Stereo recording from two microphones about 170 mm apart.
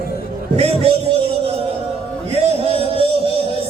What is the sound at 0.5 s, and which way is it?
Speech, 35° right (ahead or behind).